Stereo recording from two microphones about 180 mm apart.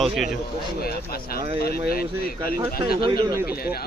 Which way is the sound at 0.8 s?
55° left (ahead or behind).